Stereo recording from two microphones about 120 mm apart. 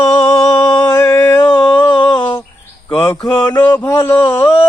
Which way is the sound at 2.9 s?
20° left (ahead or behind).